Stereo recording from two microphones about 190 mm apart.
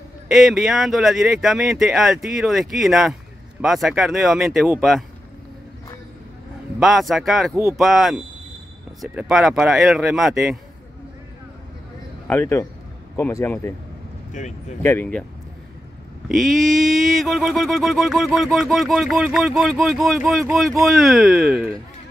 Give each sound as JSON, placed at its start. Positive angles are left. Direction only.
{"t": 0.3, "sound": "speech", "side_deg": 0}
{"t": 6.8, "sound": "speech", "side_deg": 0}
{"t": 12.3, "sound": "a man's voice", "side_deg": 10}
{"t": 14.4, "sound": "speech", "side_deg": 40}
{"t": 14.8, "sound": "a man's voice", "side_deg": 10}
{"t": 16.3, "sound": "speech", "side_deg": 0}